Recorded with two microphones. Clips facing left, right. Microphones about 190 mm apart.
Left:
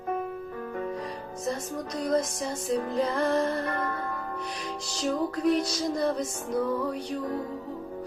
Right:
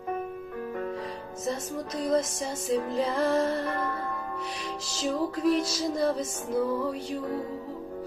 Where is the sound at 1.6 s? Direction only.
25° right (ahead or behind).